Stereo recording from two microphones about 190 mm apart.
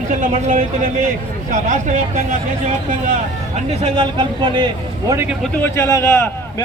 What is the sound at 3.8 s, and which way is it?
Speech, 30° right (ahead or behind).